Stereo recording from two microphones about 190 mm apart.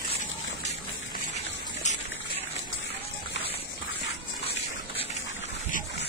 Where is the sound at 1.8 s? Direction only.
40° left (ahead or behind).